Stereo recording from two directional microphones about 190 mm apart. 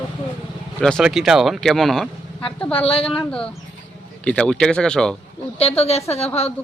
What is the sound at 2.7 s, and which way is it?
Speech, 30° left (ahead or behind).